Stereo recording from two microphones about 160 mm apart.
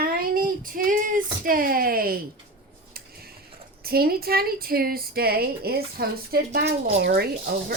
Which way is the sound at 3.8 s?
70° right (ahead or behind).